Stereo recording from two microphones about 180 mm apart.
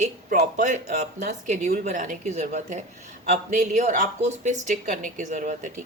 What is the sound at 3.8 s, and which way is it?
Speech, 45° right (ahead or behind).